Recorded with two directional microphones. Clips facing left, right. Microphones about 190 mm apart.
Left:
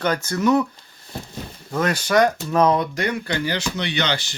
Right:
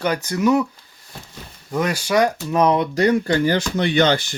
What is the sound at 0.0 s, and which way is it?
Speech, 15° right (ahead or behind).